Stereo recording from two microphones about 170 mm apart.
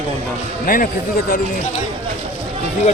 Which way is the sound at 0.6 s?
55° left (ahead or behind).